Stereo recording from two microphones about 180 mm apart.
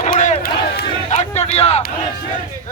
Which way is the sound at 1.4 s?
35° left (ahead or behind).